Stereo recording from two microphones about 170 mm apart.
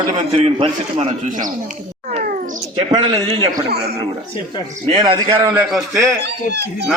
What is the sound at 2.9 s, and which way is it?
Speech, 30° right (ahead or behind).